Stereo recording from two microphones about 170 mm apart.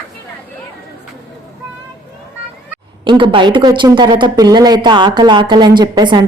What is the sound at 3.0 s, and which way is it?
Speech, 30° right (ahead or behind).